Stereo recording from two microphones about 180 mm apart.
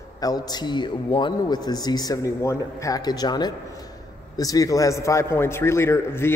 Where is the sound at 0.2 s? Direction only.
20° left (ahead or behind).